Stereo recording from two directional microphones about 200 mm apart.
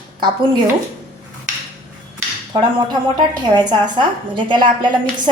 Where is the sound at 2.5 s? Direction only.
20° right (ahead or behind).